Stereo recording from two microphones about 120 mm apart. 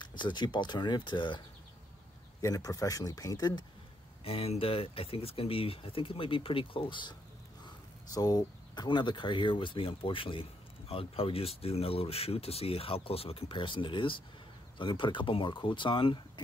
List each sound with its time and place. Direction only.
0.0 s speech: 40° left (ahead or behind)
2.4 s speech: 30° left (ahead or behind)
4.2 s speech: 55° left (ahead or behind)
7.6 s speech: 30° left (ahead or behind)